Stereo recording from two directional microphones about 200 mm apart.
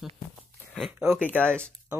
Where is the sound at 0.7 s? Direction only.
Centre (ahead or behind).